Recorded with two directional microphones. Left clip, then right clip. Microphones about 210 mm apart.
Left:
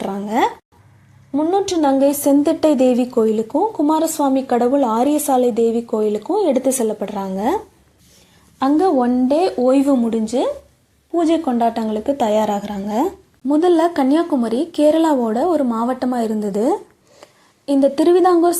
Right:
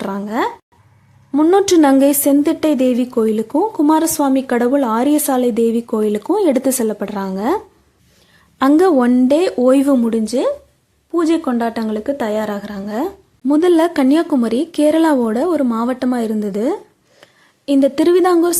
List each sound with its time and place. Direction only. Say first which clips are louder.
0.0 s speech: right 1 dB; 15° right (ahead or behind)
1.3 s a woman's voice: right 6 dB; 35° right (ahead or behind)
2.0 s a woman's voice: right 2 dB; 25° right (ahead or behind)
8.5 s a woman's voice: right 3 dB; 35° right (ahead or behind); by 13.1 s 5° right (ahead or behind)
13.5 s a woman's voice: right 2 dB; 25° right (ahead or behind)